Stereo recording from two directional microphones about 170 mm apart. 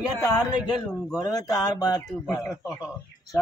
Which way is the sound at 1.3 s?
20° left (ahead or behind).